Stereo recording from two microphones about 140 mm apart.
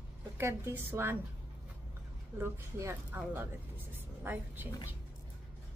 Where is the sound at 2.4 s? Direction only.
15° right (ahead or behind).